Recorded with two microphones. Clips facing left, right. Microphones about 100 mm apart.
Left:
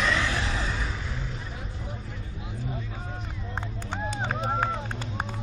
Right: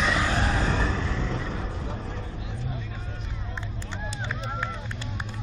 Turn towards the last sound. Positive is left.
turn(degrees=50)  # may be behind; listen again after turning